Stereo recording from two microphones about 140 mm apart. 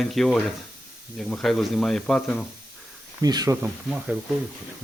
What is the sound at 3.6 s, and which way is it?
Speech, 5° right (ahead or behind).